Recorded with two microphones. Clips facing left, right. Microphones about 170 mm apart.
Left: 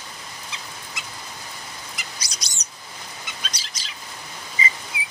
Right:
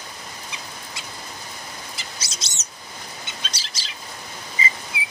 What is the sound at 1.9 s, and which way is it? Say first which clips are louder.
Bird: right 1 dB; 25° right (ahead or behind).